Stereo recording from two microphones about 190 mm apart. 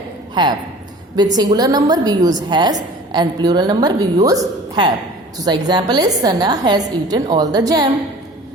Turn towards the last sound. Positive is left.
turn(degrees=-20)  # may be behind; listen again after turning